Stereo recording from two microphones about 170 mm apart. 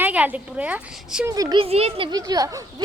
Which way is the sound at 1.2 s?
20° right (ahead or behind).